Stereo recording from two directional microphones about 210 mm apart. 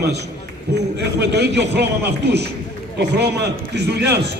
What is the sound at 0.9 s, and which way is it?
A man's voice, 55° right (ahead or behind).